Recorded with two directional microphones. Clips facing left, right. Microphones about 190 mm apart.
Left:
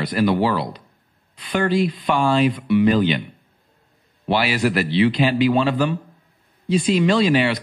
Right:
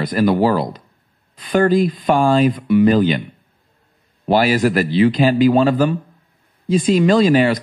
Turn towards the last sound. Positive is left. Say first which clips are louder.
# right 4 dB
turn(degrees=-45)  # may be behind; listen again after turning